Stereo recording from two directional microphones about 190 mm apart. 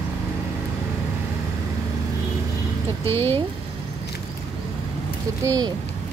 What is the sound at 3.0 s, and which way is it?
Speech, 15° left (ahead or behind).